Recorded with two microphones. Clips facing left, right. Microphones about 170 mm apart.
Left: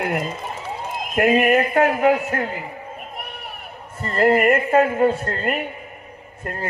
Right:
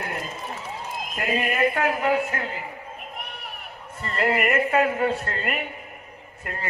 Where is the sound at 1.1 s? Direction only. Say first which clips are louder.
Left 11 dB; 60° left (ahead or behind).